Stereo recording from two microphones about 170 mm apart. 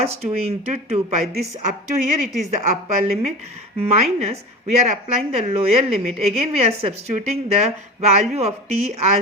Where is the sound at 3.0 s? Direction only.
40° right (ahead or behind).